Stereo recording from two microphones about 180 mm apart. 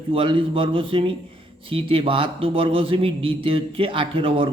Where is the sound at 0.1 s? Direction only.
30° right (ahead or behind).